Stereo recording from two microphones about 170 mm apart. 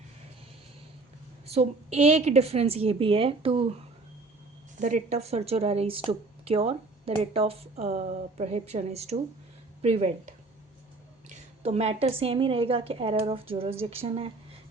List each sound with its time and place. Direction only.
1.5 s speech: 35° right (ahead or behind)
4.8 s speech: 50° right (ahead or behind)